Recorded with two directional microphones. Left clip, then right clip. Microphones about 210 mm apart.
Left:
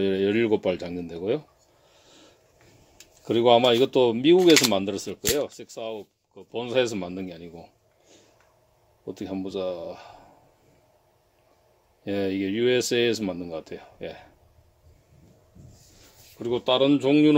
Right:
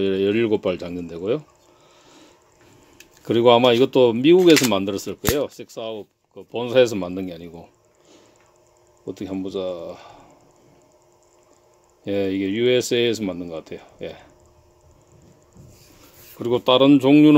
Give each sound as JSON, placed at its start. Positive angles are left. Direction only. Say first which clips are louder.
{"t": 0.0, "sound": "speech", "louder": "right 3 dB", "side_deg": -10}
{"t": 3.3, "sound": "speech", "louder": "right 4 dB", "side_deg": -20}
{"t": 9.0, "sound": "speech", "louder": "right 4 dB", "side_deg": -10}
{"t": 12.0, "sound": "speech", "louder": "right 4 dB", "side_deg": -10}
{"t": 16.3, "sound": "speech", "louder": "right 6 dB", "side_deg": -25}